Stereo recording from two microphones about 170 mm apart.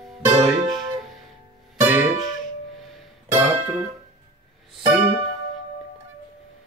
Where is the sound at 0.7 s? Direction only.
25° right (ahead or behind).